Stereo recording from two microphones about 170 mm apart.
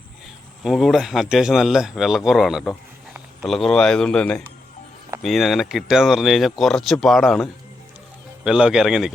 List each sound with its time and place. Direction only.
0.6 s speech: centre (ahead or behind)